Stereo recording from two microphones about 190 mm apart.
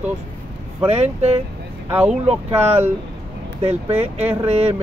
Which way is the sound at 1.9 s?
5° right (ahead or behind).